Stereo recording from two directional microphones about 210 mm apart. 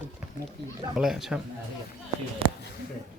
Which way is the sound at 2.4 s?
25° right (ahead or behind).